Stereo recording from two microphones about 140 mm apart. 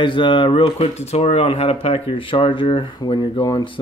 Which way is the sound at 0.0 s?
35° left (ahead or behind).